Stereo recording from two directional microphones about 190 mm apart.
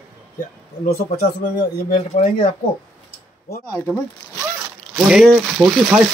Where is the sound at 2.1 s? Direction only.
30° left (ahead or behind).